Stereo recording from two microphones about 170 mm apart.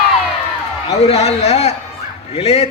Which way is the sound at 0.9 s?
40° left (ahead or behind).